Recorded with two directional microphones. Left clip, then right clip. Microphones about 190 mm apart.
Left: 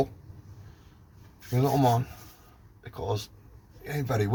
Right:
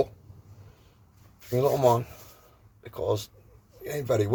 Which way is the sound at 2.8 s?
45° right (ahead or behind).